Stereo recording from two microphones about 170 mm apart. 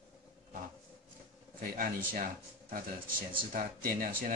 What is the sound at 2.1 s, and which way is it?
A man's voice, 55° right (ahead or behind).